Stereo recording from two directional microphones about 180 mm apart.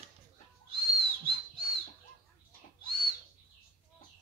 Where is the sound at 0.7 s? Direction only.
30° right (ahead or behind).